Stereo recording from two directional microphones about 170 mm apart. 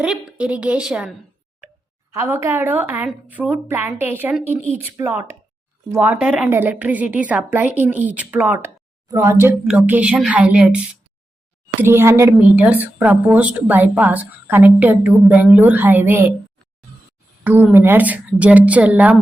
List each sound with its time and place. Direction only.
0.0 s a woman's voice: 5° right (ahead or behind)
2.1 s a woman's voice: 15° right (ahead or behind)
17.4 s a woman's voice: 10° right (ahead or behind)